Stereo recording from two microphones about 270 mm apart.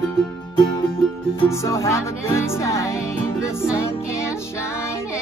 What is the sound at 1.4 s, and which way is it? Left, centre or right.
Speech, centre.